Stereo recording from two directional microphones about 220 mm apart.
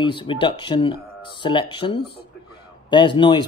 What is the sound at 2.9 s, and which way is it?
Speech, 20° left (ahead or behind).